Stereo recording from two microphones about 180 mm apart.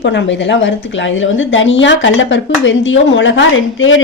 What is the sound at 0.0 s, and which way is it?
A woman's voice, 75° left (ahead or behind).